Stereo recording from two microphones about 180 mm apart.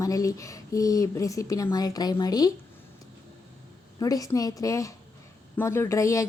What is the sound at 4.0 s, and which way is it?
A woman's voice, 20° left (ahead or behind).